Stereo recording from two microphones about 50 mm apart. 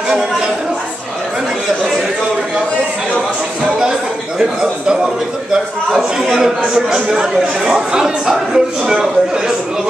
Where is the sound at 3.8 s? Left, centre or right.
Centre.